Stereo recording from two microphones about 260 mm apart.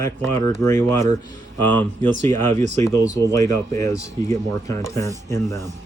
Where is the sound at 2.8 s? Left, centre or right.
Centre.